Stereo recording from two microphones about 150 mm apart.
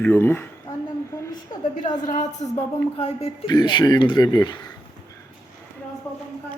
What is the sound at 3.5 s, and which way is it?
Speech, 30° left (ahead or behind).